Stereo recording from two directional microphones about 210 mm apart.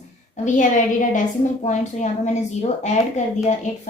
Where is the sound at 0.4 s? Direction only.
35° left (ahead or behind).